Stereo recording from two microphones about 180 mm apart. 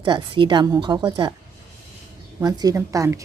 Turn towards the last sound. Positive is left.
turn(degrees=-20)  # may be behind; listen again after turning